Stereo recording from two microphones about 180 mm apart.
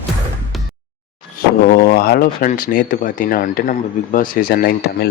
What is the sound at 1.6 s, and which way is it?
Speech, 55° left (ahead or behind).